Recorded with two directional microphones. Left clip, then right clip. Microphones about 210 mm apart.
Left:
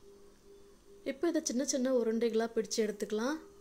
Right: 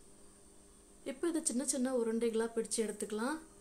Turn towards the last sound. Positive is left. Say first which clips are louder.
# left 3 dB
turn(degrees=20)  # may be behind; listen again after turning